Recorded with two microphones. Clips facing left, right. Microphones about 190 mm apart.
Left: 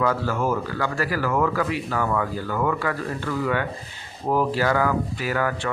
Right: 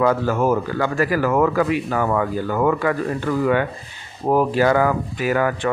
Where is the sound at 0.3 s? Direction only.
40° right (ahead or behind).